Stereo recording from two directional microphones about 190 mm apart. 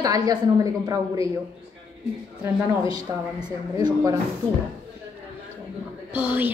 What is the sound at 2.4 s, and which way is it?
A woman's voice, 20° right (ahead or behind).